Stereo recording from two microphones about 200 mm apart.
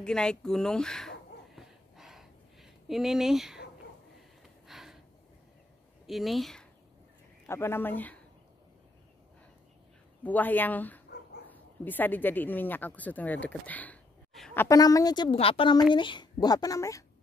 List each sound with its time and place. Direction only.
0.0 s a sound: 5° left (ahead or behind)
4.6 s gasp: centre (ahead or behind)
6.0 s speech: centre (ahead or behind)
7.4 s speech: 10° left (ahead or behind)
10.2 s a child's voice: 10° left (ahead or behind)